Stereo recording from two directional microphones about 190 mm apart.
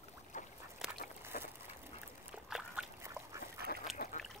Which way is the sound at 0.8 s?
Centre (ahead or behind).